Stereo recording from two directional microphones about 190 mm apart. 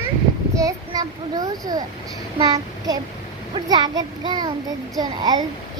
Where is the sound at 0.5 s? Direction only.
20° right (ahead or behind).